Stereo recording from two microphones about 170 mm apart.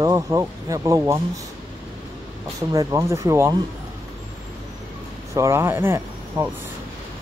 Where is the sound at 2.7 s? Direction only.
20° right (ahead or behind).